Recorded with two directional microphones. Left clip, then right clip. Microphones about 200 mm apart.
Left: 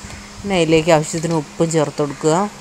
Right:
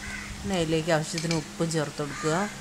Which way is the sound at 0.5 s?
20° left (ahead or behind).